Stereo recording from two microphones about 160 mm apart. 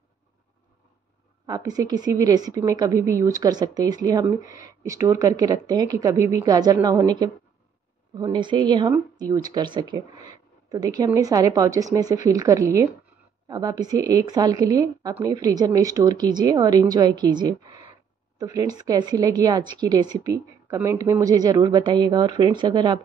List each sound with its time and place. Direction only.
1.4 s a woman's voice: 25° right (ahead or behind)